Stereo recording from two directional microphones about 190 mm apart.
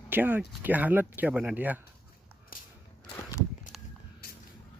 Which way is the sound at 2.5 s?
50° left (ahead or behind).